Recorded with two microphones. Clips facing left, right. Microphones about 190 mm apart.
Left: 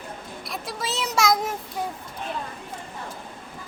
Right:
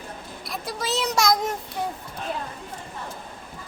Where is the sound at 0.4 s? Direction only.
Centre (ahead or behind).